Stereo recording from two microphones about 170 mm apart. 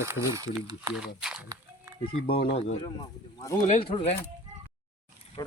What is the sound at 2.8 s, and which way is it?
Speech, 25° left (ahead or behind).